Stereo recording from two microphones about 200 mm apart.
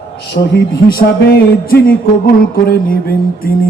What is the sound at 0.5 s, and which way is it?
Mantra, 50° left (ahead or behind).